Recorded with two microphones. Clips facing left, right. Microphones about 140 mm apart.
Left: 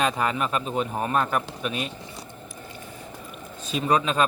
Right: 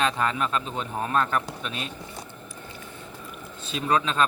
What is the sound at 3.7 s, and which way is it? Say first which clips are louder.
Speech: left 2 dB; 10° left (ahead or behind).